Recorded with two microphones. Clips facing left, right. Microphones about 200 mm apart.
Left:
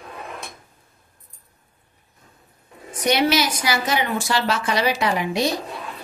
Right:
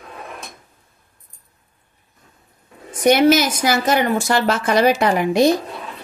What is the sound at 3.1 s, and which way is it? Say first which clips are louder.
A woman's voice: right 6 dB; 50° right (ahead or behind).